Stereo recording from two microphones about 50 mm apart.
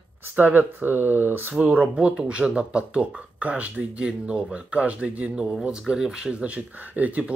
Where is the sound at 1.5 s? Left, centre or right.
Right.